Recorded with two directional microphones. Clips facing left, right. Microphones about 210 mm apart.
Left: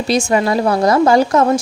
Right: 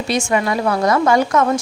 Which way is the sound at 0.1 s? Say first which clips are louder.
Left 4 dB; 35° left (ahead or behind).